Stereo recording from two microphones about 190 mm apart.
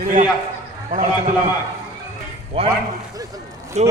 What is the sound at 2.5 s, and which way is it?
Speech, 30° right (ahead or behind).